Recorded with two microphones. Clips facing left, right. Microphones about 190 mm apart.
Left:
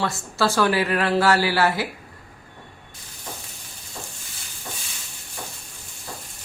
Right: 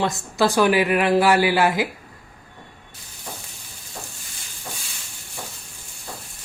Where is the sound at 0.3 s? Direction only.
15° right (ahead or behind).